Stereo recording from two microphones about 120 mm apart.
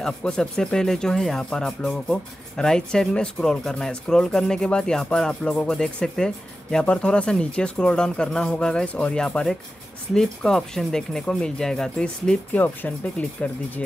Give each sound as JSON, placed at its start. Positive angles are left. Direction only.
{"t": 0.0, "sound": "speech", "side_deg": 5}